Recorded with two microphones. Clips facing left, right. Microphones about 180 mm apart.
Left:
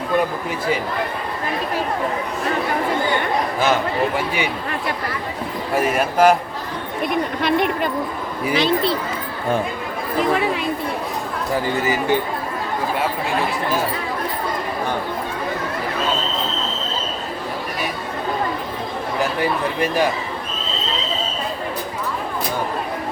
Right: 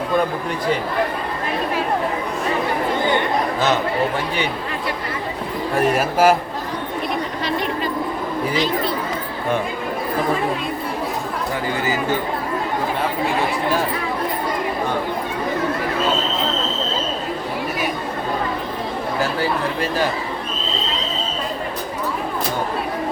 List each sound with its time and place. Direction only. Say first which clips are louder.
5.7 s a man's voice: even; centre (ahead or behind)
7.4 s a sound: left 5 dB; 60° left (ahead or behind)
8.5 s speech: left 5 dB; 70° left (ahead or behind)